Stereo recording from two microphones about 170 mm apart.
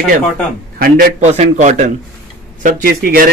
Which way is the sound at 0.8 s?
60° right (ahead or behind).